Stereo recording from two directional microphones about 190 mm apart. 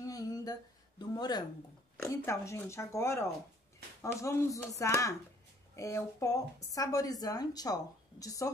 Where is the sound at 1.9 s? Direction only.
15° left (ahead or behind).